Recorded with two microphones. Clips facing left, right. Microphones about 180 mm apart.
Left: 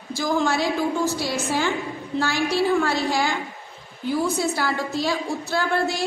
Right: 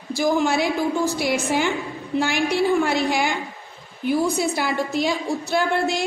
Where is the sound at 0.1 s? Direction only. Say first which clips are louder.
Right 3 dB; 15° right (ahead or behind).